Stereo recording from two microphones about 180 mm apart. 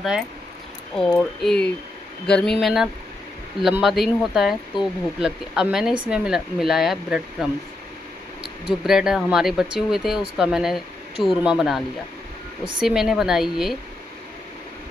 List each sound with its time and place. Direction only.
0.9 s speech: 5° left (ahead or behind)
8.6 s speech: centre (ahead or behind)
12.8 s speech: centre (ahead or behind)